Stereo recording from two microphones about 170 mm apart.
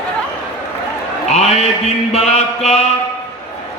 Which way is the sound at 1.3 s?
40° left (ahead or behind).